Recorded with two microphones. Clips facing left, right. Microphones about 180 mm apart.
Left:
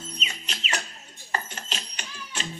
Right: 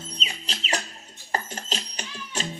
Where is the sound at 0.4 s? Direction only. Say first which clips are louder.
Right 4 dB; 35° right (ahead or behind).